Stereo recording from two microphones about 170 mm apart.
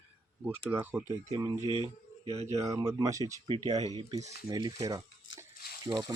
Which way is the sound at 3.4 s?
30° right (ahead or behind).